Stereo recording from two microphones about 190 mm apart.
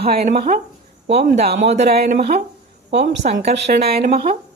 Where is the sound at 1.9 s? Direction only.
50° right (ahead or behind).